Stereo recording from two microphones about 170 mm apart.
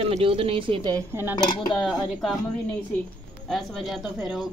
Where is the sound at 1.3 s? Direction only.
25° left (ahead or behind).